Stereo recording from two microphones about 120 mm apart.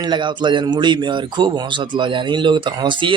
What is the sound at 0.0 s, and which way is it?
A man's voice, 40° right (ahead or behind).